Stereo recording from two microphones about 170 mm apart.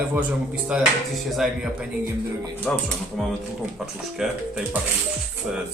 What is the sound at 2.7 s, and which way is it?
Speech, 10° left (ahead or behind).